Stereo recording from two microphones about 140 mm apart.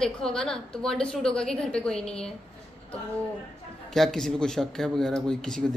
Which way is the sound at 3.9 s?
5° left (ahead or behind).